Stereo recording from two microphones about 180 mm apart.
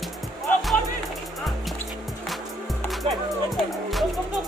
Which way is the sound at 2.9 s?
Centre (ahead or behind).